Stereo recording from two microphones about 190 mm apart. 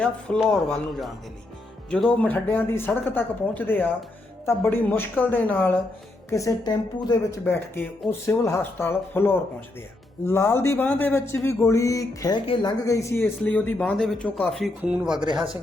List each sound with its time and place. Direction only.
0.0 s speech: 5° left (ahead or behind)
2.2 s speech: 10° left (ahead or behind)